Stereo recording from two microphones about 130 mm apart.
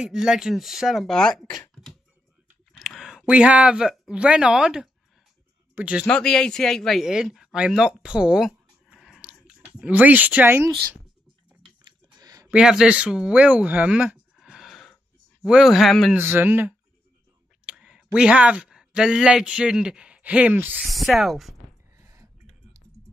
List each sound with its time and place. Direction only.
0.0 s speech: 5° right (ahead or behind)
2.8 s speech: centre (ahead or behind)
6.0 s a man's voice: 5° left (ahead or behind); by 10.7 s 15° right (ahead or behind)
12.2 s a sound: 30° right (ahead or behind)
12.4 s speech: 5° right (ahead or behind)
16.2 s speech: 15° right (ahead or behind)
20.8 s speech: centre (ahead or behind)
21.9 s clicking: 25° right (ahead or behind)